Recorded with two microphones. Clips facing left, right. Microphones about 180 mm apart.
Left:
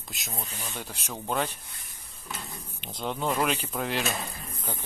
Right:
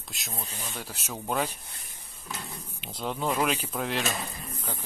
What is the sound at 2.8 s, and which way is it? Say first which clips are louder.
Speech: even; 5° right (ahead or behind).